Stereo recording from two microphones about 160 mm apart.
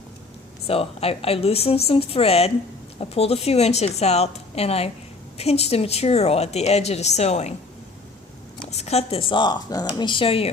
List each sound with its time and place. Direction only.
0.7 s a woman's voice: 40° left (ahead or behind)
8.7 s a woman's voice: 40° left (ahead or behind)